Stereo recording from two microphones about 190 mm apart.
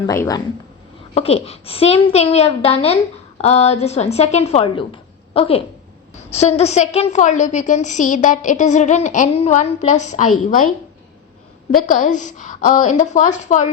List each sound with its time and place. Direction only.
0.1 s speech: 15° left (ahead or behind)
1.1 s a woman's voice: 30° left (ahead or behind)
11.7 s a woman's voice: 45° left (ahead or behind)